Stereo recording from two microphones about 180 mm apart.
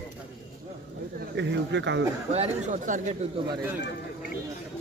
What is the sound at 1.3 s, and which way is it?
Speech, 75° right (ahead or behind).